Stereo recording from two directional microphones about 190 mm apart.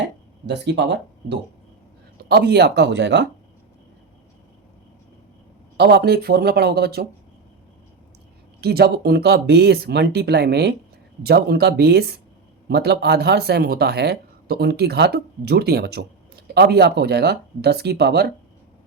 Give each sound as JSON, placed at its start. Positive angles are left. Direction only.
{"t": 0.4, "sound": "speech", "side_deg": -65}
{"t": 5.7, "sound": "speech", "side_deg": -60}
{"t": 8.6, "sound": "speech", "side_deg": -55}